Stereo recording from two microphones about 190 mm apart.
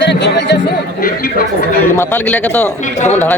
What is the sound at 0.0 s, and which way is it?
Music, 65° left (ahead or behind).